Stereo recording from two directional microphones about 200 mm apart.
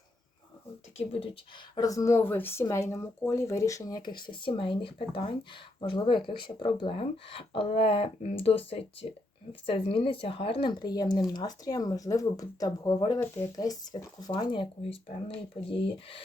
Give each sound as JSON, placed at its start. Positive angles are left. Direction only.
{"t": 1.7, "sound": "speech", "side_deg": 15}